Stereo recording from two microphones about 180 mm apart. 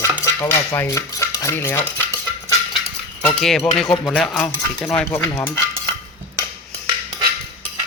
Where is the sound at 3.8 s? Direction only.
Centre (ahead or behind).